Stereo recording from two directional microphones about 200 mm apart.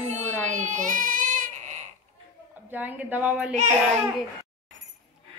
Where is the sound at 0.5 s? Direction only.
40° right (ahead or behind).